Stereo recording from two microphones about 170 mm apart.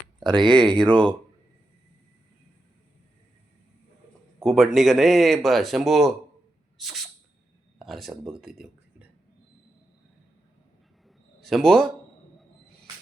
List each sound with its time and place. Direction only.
0.4 s speech: 5° left (ahead or behind)
4.4 s speech: centre (ahead or behind)
6.7 s a sound: centre (ahead or behind)
7.8 s speech: centre (ahead or behind)
11.3 s a man's voice: centre (ahead or behind)
12.4 s music: 5° left (ahead or behind)